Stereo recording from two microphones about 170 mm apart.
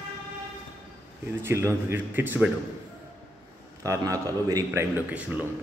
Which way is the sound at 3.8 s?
20° right (ahead or behind).